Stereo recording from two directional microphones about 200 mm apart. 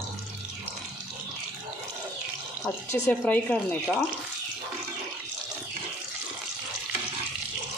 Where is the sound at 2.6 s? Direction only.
5° left (ahead or behind).